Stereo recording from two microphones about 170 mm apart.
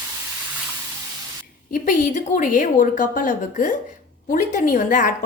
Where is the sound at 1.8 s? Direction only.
55° left (ahead or behind).